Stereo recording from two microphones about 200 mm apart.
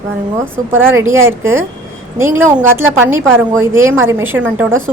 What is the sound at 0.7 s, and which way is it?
A woman's voice, 10° right (ahead or behind).